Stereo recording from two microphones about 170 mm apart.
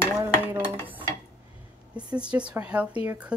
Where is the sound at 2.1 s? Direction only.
5° right (ahead or behind).